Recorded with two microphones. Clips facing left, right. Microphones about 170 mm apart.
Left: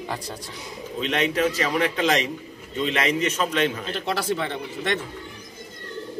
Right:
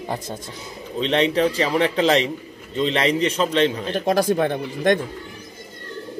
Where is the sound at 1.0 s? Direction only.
30° right (ahead or behind).